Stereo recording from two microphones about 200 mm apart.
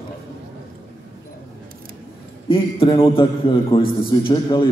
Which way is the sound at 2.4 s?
25° left (ahead or behind).